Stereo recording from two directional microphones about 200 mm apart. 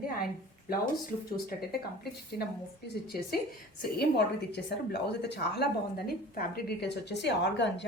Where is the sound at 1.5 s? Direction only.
50° left (ahead or behind).